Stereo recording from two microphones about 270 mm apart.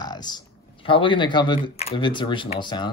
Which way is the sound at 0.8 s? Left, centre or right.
Centre.